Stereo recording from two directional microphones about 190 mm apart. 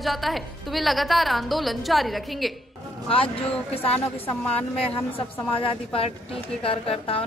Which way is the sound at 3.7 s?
30° left (ahead or behind).